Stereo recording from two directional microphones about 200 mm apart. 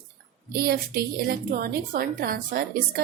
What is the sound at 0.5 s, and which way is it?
A woman's voice, 50° right (ahead or behind).